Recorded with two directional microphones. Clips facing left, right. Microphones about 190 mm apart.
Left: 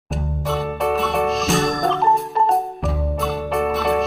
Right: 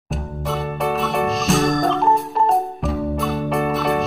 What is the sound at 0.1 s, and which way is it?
Music, centre (ahead or behind).